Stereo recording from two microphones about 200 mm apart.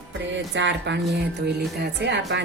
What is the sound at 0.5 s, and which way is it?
Speech, 60° right (ahead or behind).